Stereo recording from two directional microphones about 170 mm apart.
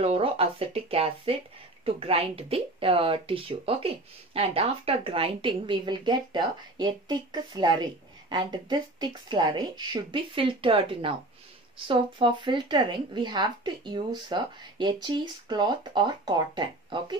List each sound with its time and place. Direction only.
0.0 s speech: 35° right (ahead or behind)